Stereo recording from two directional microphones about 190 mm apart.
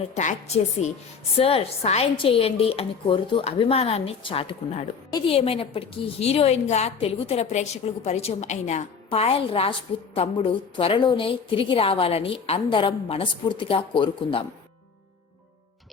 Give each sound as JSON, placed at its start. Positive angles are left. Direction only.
{"t": 0.1, "sound": "a woman's voice", "side_deg": 40}